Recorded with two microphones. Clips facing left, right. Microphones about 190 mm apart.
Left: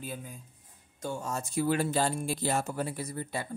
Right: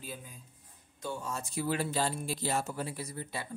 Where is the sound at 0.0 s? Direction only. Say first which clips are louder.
Left 5 dB; 50° left (ahead or behind).